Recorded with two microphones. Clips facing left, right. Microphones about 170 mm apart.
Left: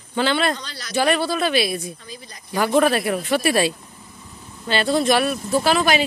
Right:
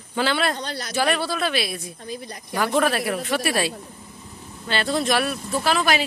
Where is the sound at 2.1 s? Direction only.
60° right (ahead or behind).